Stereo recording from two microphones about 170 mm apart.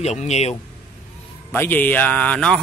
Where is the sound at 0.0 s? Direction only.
40° left (ahead or behind).